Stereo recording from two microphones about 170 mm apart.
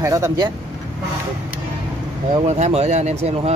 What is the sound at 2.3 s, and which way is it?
Speech, 40° right (ahead or behind).